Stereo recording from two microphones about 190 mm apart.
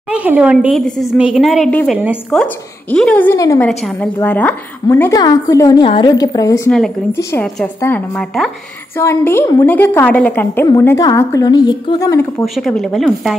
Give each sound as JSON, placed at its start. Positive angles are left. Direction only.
{"t": 0.1, "sound": "a woman's voice", "side_deg": -5}
{"t": 3.5, "sound": "a woman's voice", "side_deg": 5}
{"t": 7.4, "sound": "a woman's voice", "side_deg": 5}
{"t": 8.9, "sound": "a woman's voice", "side_deg": 10}
{"t": 12.5, "sound": "a woman's voice", "side_deg": 0}